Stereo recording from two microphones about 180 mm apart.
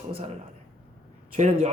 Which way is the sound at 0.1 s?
30° right (ahead or behind).